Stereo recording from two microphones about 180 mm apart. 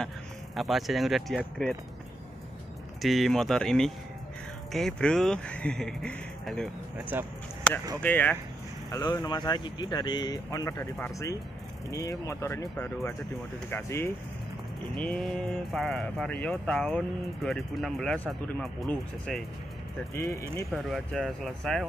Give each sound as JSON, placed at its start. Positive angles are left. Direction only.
{"t": 0.6, "sound": "speech", "side_deg": 0}
{"t": 3.0, "sound": "speech", "side_deg": 0}
{"t": 7.1, "sound": "speech", "side_deg": -10}
{"t": 8.0, "sound": "speech", "side_deg": 10}
{"t": 8.9, "sound": "speech", "side_deg": 20}
{"t": 20.7, "sound": "speech", "side_deg": 0}